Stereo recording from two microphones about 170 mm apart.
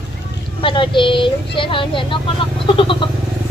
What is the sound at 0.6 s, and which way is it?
Speech, 30° left (ahead or behind).